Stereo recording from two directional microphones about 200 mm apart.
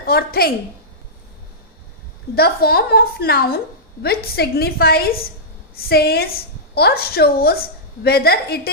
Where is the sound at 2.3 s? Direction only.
50° left (ahead or behind).